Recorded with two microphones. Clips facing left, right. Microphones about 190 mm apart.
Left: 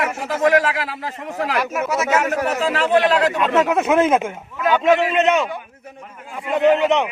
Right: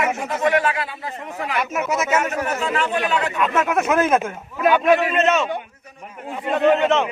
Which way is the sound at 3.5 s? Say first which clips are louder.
Left 2 dB; 25° left (ahead or behind).